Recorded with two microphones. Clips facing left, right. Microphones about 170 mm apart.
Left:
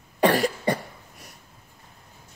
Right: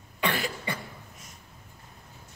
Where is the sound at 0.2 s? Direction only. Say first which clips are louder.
Left 9 dB; 40° left (ahead or behind).